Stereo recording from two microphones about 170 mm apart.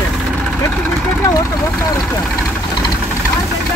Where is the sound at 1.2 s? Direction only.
15° left (ahead or behind).